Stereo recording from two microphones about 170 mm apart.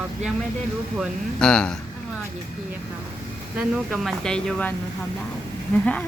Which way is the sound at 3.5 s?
5° right (ahead or behind).